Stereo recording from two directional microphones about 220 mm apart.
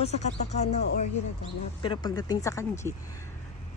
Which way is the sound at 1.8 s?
20° left (ahead or behind).